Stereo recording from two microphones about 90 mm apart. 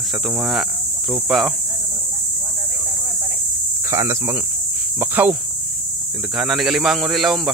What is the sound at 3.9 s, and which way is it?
Speech, 30° right (ahead or behind).